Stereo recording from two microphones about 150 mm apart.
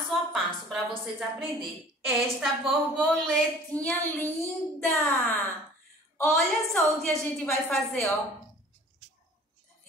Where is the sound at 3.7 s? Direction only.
10° left (ahead or behind).